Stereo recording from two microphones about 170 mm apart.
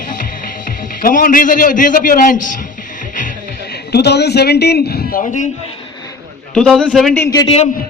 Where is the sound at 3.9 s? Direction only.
75° left (ahead or behind); by 5.5 s 50° left (ahead or behind).